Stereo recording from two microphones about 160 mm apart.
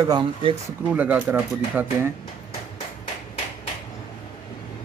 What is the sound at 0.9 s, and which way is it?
Speech, 10° right (ahead or behind).